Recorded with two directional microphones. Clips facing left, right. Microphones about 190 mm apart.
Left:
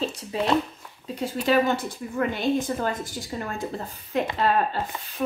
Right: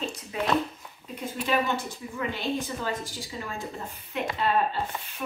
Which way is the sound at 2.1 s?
50° left (ahead or behind).